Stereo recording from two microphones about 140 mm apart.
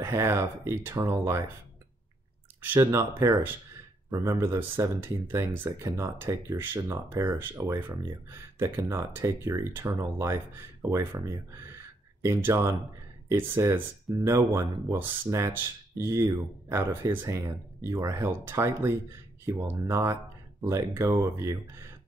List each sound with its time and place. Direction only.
0.0 s speech: 20° right (ahead or behind)
2.8 s speech: 20° right (ahead or behind)